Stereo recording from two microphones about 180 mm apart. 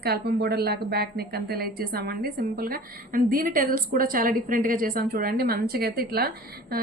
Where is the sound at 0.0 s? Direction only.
65° right (ahead or behind).